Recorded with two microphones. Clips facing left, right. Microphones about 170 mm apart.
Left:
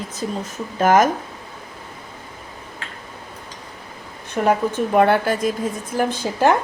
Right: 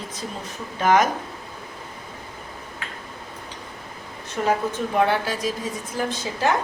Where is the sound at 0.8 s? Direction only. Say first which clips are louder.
Left 3 dB; 45° left (ahead or behind).